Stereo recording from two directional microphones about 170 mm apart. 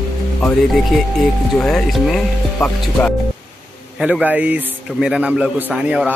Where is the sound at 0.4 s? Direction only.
5° left (ahead or behind).